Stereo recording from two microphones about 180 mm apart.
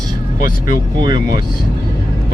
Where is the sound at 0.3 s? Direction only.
50° left (ahead or behind).